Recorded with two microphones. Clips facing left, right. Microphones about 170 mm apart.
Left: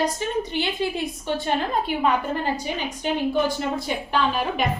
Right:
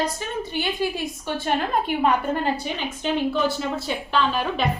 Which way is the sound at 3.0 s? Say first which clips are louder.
Even; 15° left (ahead or behind).